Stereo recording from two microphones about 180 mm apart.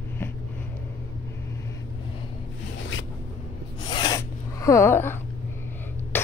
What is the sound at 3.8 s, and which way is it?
Rub, 20° left (ahead or behind).